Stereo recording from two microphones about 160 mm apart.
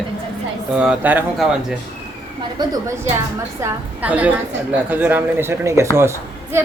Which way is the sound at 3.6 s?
10° right (ahead or behind).